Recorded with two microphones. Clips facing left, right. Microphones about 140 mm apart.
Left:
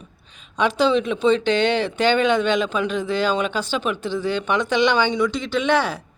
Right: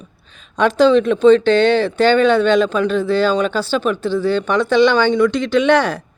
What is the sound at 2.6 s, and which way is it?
Speech, 40° right (ahead or behind).